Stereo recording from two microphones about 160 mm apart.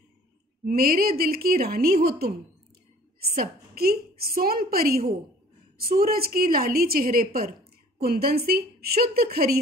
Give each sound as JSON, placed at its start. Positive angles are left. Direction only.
{"t": 0.7, "sound": "a woman's voice", "side_deg": -70}
{"t": 3.3, "sound": "a woman's voice", "side_deg": -70}